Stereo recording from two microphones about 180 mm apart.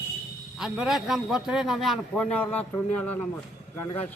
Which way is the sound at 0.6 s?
Centre (ahead or behind).